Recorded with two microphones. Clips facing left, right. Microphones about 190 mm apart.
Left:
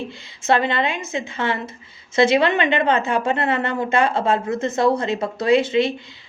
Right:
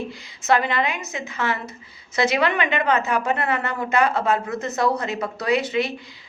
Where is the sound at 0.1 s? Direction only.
25° left (ahead or behind).